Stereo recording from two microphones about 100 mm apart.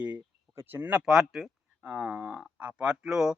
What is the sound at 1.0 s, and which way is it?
Speech, 5° right (ahead or behind).